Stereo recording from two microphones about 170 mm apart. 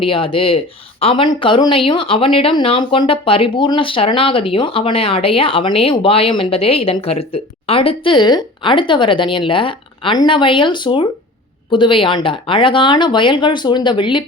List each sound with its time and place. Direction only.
0.0 s speech: 30° left (ahead or behind)